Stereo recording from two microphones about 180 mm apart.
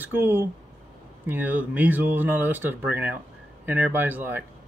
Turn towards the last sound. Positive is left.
turn(degrees=-10)  # may be behind; listen again after turning